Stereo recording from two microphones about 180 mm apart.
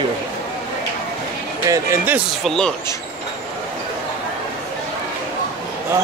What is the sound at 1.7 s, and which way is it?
Speech, 15° right (ahead or behind).